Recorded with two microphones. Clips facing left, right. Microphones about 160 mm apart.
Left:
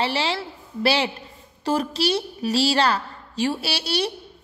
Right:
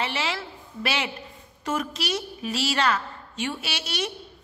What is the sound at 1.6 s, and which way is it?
A woman's voice, 30° left (ahead or behind).